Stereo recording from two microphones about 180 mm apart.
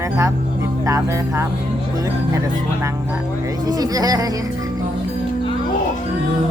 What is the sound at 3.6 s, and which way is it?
Speech, 20° right (ahead or behind).